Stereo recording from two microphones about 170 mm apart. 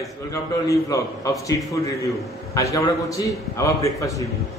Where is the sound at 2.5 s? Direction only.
20° left (ahead or behind).